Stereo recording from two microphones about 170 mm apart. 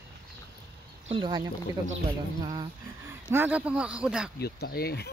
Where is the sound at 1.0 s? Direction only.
30° right (ahead or behind).